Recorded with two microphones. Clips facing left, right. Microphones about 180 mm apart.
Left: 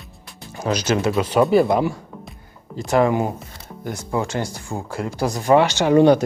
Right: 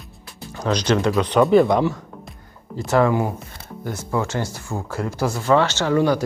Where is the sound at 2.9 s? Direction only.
20° left (ahead or behind).